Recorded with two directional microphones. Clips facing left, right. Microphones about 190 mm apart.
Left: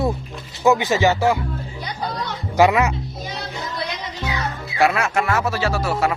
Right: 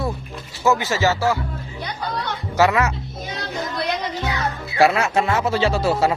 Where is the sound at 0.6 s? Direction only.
15° left (ahead or behind).